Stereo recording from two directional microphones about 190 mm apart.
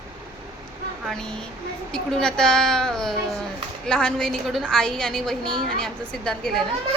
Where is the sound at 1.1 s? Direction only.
5° left (ahead or behind).